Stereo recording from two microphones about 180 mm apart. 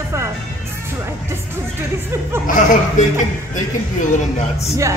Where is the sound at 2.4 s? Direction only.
45° left (ahead or behind).